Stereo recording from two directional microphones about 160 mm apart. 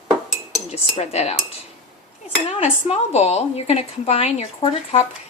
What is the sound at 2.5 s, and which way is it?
A woman's voice, 40° left (ahead or behind).